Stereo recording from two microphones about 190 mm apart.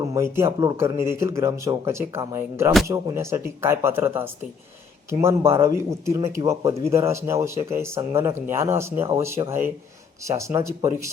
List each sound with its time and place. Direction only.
0.0 s speech: 15° right (ahead or behind)